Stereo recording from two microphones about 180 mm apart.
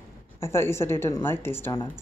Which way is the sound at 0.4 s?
15° left (ahead or behind).